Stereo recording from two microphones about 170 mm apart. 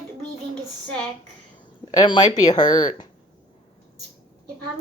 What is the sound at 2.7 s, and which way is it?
Speech, 50° left (ahead or behind).